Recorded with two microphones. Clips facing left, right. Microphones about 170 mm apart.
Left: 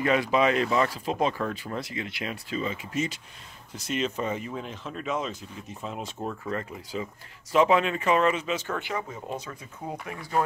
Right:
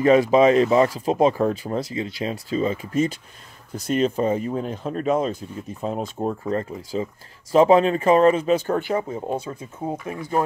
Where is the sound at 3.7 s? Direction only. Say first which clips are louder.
Right 8 dB; 50° right (ahead or behind).